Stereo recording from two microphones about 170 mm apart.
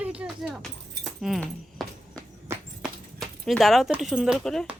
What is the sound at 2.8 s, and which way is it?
Speech, centre (ahead or behind).